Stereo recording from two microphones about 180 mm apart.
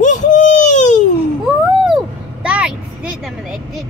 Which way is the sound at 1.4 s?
5° right (ahead or behind).